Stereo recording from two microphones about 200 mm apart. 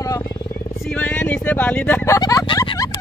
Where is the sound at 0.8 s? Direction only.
5° left (ahead or behind).